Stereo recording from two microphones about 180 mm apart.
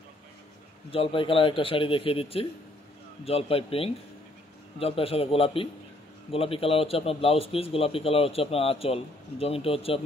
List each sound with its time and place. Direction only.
0.9 s a man's voice: 30° left (ahead or behind)